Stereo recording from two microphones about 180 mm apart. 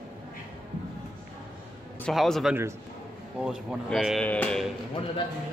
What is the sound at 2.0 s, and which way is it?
A man's voice, centre (ahead or behind).